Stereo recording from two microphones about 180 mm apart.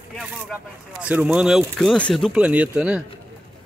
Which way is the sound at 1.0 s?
5° right (ahead or behind).